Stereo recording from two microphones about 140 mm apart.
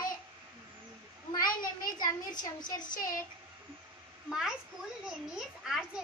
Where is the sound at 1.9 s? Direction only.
30° left (ahead or behind).